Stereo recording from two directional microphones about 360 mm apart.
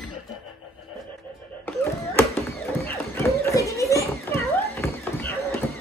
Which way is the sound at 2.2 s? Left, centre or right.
Centre.